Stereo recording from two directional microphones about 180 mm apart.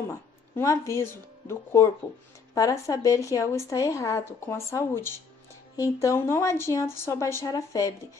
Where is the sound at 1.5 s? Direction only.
15° left (ahead or behind).